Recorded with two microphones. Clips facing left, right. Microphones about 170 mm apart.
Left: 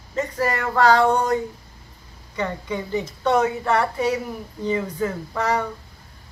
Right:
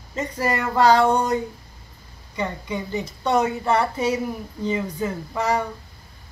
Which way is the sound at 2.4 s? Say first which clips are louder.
Left 1 dB; 15° right (ahead or behind).